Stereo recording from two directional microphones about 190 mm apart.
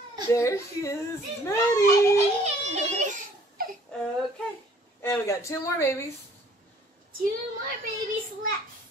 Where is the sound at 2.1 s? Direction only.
35° right (ahead or behind).